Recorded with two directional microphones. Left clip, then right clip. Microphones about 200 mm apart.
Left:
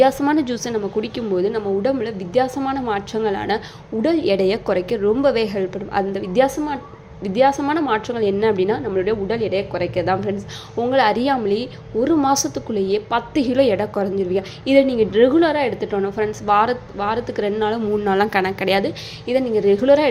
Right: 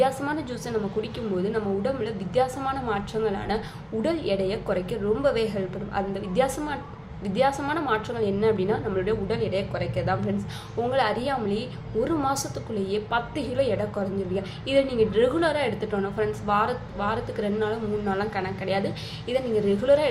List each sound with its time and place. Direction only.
0.0 s a woman's voice: 35° left (ahead or behind)
19.3 s a woman's voice: 35° left (ahead or behind)